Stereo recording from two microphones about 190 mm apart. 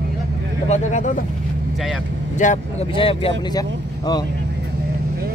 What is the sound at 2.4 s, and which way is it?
Speech, 40° left (ahead or behind).